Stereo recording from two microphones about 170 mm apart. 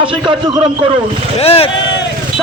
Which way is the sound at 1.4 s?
35° left (ahead or behind).